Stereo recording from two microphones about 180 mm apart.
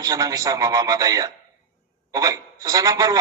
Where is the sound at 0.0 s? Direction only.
20° right (ahead or behind).